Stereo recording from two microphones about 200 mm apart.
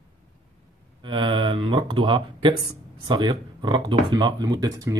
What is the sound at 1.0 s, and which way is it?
Speech, 25° right (ahead or behind).